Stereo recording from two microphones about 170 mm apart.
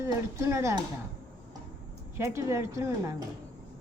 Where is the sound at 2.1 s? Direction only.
15° right (ahead or behind).